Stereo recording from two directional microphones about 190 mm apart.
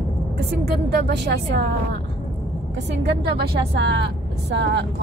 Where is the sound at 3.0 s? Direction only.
60° right (ahead or behind).